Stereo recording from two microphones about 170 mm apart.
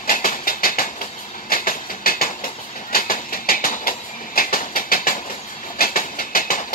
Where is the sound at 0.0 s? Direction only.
50° left (ahead or behind).